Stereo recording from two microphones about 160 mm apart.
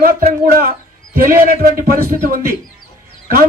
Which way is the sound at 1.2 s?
65° right (ahead or behind).